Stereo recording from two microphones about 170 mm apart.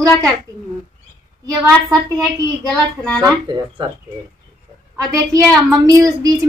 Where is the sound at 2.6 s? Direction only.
5° left (ahead or behind).